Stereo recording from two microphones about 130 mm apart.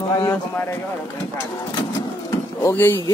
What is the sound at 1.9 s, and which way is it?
Vehicle, 25° left (ahead or behind).